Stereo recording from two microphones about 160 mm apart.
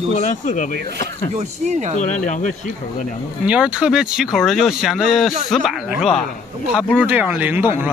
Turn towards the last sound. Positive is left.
turn(degrees=-10)  # may be behind; listen again after turning